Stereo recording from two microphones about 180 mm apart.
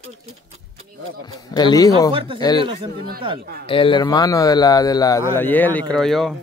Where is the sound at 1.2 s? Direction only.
20° left (ahead or behind).